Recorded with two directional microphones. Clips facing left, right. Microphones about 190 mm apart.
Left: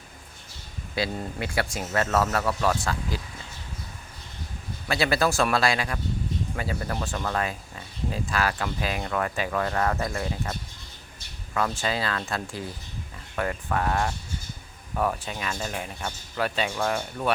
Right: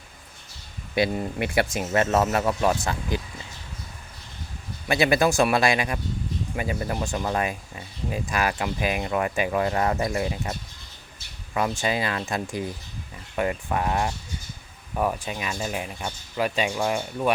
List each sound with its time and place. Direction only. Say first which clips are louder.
0.9 s speech: right 5 dB; 20° right (ahead or behind)
4.9 s speech: right 3 dB; 20° right (ahead or behind)
11.8 s speech: right 2 dB; 15° right (ahead or behind)